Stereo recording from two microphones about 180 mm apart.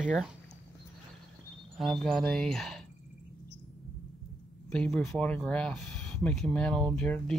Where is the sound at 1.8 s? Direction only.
Centre (ahead or behind).